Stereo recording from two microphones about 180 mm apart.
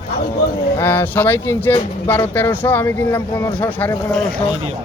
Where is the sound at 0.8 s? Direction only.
10° left (ahead or behind).